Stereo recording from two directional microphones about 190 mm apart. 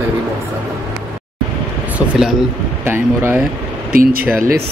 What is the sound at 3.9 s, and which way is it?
Speech, 50° right (ahead or behind).